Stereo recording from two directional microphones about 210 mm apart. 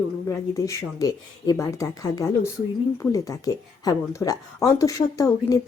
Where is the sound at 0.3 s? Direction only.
15° left (ahead or behind).